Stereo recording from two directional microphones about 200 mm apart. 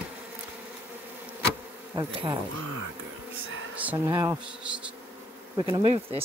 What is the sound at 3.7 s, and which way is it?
Speech, 10° right (ahead or behind).